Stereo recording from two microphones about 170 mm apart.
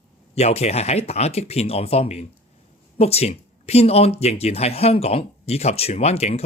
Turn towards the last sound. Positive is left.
turn(degrees=35)  # may be behind; listen again after turning